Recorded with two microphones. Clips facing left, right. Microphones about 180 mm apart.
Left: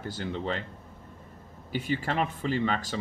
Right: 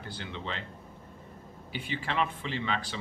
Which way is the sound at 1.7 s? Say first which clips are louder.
Left 6 dB; 45° left (ahead or behind).